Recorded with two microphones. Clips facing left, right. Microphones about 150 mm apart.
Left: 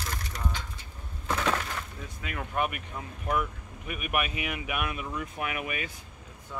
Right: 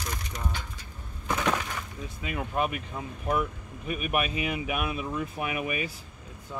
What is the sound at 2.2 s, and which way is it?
Speech, 15° right (ahead or behind).